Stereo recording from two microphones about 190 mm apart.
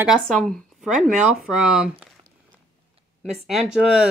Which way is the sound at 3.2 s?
Centre (ahead or behind).